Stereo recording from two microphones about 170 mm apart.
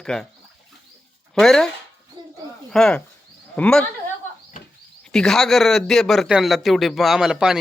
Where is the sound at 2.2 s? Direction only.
25° right (ahead or behind).